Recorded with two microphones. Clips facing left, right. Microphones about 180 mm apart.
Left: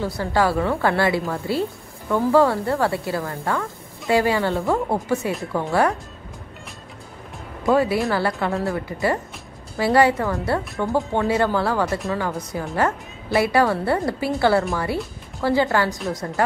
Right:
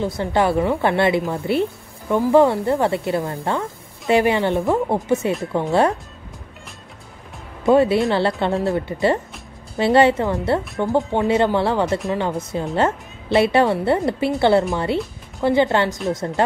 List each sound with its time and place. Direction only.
0.0 s a woman's voice: 20° right (ahead or behind)
7.6 s a woman's voice: 25° right (ahead or behind)